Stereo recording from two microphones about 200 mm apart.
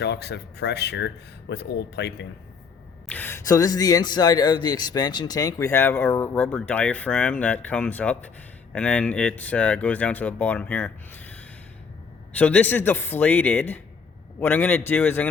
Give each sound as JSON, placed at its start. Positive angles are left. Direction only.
{"t": 0.0, "sound": "speech", "side_deg": 55}
{"t": 3.1, "sound": "a man's voice", "side_deg": 10}
{"t": 12.4, "sound": "a man's voice", "side_deg": 5}